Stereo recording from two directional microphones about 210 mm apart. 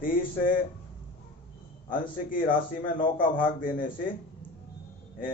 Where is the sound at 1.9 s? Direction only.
40° left (ahead or behind).